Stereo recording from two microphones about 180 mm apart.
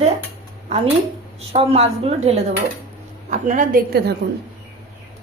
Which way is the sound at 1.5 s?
35° right (ahead or behind).